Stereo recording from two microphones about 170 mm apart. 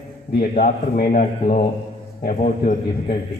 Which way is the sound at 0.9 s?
50° left (ahead or behind).